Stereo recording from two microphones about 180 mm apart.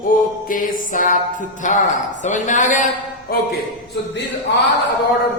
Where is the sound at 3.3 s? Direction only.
55° left (ahead or behind).